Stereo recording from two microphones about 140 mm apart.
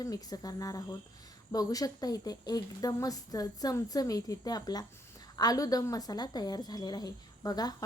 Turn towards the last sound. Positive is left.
turn(degrees=30)  # may be behind; listen again after turning